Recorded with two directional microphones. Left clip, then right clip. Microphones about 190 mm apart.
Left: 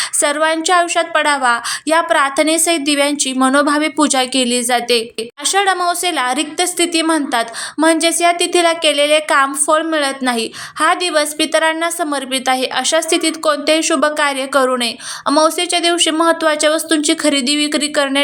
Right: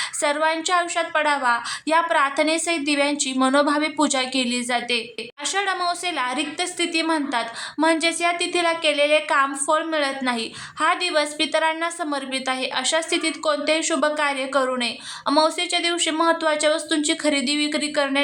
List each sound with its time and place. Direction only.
0.2 s a woman's voice: 20° left (ahead or behind)